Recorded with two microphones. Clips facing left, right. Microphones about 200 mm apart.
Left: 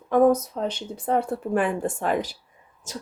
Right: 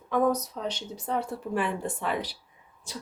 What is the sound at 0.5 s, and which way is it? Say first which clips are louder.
Speech: left 5 dB; 55° left (ahead or behind).